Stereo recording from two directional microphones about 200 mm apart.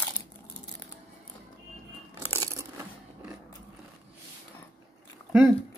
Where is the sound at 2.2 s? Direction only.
15° right (ahead or behind).